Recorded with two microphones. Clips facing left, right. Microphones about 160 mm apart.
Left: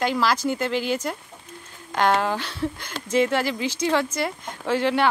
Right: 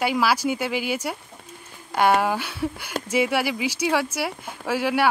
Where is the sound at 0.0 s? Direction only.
10° right (ahead or behind).